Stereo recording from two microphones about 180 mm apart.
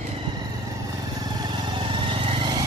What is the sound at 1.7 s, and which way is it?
Vehicle, 30° right (ahead or behind).